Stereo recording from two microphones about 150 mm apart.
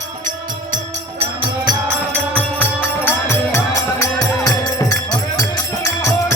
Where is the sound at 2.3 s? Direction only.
10° left (ahead or behind).